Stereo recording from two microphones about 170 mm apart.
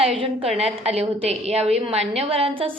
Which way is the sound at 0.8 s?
40° right (ahead or behind).